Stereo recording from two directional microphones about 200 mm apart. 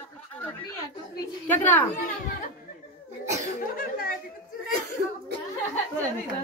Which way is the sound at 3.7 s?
45° left (ahead or behind).